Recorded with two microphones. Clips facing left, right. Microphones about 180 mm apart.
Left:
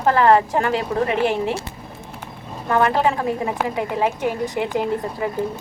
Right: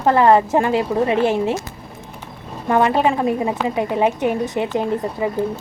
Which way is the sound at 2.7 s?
20° right (ahead or behind).